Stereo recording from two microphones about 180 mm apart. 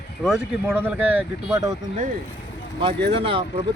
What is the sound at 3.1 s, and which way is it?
Speech, 30° right (ahead or behind).